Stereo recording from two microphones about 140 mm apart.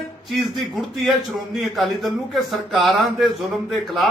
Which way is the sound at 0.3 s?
Centre (ahead or behind).